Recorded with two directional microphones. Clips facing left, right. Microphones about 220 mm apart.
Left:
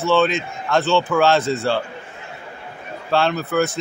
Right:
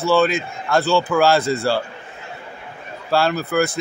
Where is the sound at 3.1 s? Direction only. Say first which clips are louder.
Even; 5° right (ahead or behind).